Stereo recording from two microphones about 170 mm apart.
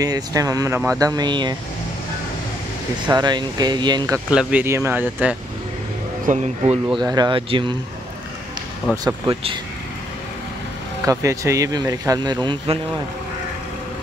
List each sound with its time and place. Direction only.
0.0 s speech: 20° right (ahead or behind)
3.1 s speech: 25° right (ahead or behind)
4.3 s speech: 5° right (ahead or behind)
6.3 s speech: 50° right (ahead or behind)
7.0 s speech: 25° right (ahead or behind)
8.9 s speech: 20° right (ahead or behind)
11.1 s speech: 20° right (ahead or behind)